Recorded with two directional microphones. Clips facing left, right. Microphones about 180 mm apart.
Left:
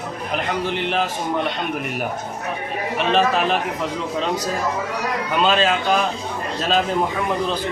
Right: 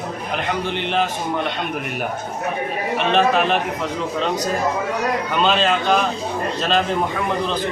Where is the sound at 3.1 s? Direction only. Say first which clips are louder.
Right 2 dB; centre (ahead or behind).